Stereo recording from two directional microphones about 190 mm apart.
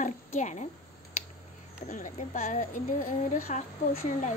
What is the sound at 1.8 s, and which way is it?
Speech, 40° left (ahead or behind).